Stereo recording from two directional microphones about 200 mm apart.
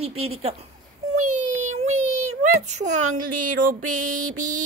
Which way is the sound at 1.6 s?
35° right (ahead or behind).